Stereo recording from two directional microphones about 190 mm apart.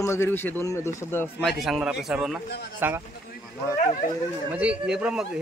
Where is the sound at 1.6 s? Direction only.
5° right (ahead or behind).